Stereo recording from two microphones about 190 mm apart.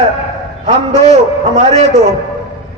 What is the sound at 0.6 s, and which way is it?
A man's voice, 35° right (ahead or behind).